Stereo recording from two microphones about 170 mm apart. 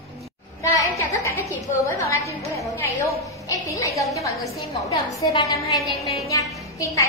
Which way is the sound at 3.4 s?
20° left (ahead or behind).